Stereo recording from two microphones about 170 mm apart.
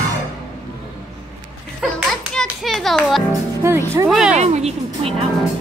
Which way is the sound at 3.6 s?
15° right (ahead or behind).